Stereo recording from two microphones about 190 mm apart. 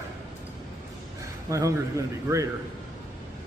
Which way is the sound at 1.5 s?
15° right (ahead or behind).